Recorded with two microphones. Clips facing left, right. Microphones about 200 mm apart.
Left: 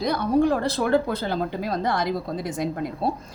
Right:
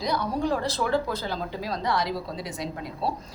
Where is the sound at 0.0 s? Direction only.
55° left (ahead or behind).